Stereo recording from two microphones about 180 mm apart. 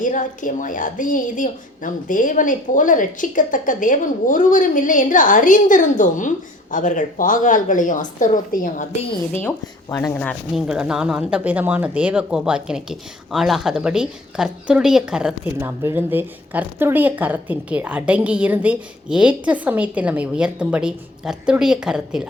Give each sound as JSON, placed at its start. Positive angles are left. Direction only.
{"t": 0.0, "sound": "a woman's voice", "side_deg": 45}
{"t": 10.2, "sound": "speech", "side_deg": 5}
{"t": 10.7, "sound": "speech", "side_deg": -5}